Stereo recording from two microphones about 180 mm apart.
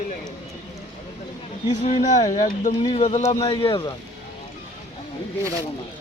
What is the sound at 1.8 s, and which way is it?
Speech, 40° left (ahead or behind).